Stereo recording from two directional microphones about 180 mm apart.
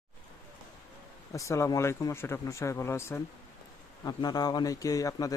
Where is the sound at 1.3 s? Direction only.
15° left (ahead or behind).